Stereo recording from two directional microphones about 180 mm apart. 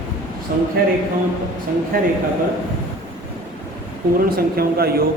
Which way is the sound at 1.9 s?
55° right (ahead or behind).